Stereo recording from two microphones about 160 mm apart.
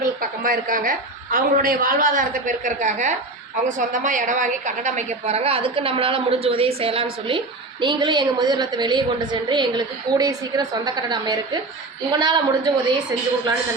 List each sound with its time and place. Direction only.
0.0 s a woman's voice: 60° right (ahead or behind); by 13.5 s 25° right (ahead or behind)